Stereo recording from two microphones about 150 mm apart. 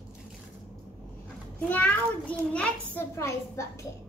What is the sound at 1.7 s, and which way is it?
A child's voice, 10° left (ahead or behind).